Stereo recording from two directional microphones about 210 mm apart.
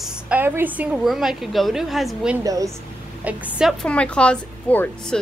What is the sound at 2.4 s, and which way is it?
A woman's voice, 15° right (ahead or behind).